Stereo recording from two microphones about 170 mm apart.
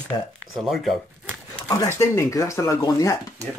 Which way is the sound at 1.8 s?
15° left (ahead or behind).